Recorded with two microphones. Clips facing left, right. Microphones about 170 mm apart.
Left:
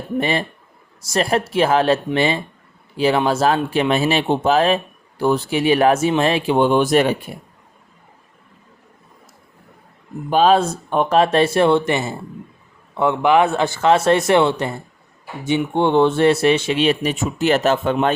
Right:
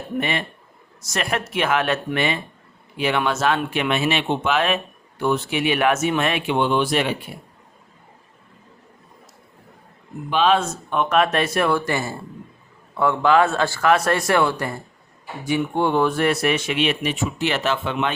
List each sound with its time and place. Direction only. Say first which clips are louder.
0.2 s speech: left 4 dB; 35° left (ahead or behind)
10.2 s speech: left 4 dB; 40° left (ahead or behind)